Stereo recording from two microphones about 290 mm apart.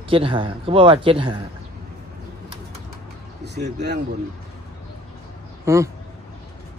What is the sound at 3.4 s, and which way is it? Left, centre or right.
Speech, right.